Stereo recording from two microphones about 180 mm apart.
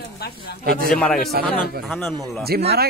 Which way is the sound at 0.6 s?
60° right (ahead or behind).